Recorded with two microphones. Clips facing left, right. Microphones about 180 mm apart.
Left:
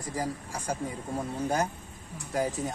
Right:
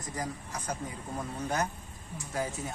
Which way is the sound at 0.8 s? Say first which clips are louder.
Left 4 dB; 30° left (ahead or behind).